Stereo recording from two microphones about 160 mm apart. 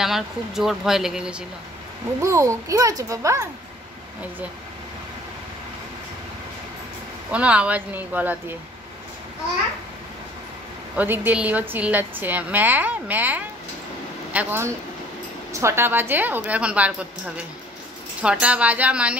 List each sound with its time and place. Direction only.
0.0 s speech: centre (ahead or behind)
2.2 s a child's voice: 20° right (ahead or behind)
7.2 s a woman's voice: 10° right (ahead or behind)
11.0 s a woman's voice: 10° right (ahead or behind)